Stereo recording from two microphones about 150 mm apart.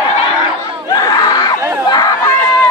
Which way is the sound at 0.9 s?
25° left (ahead or behind).